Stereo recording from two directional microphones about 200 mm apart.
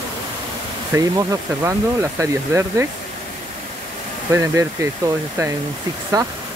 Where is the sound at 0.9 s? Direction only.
15° right (ahead or behind).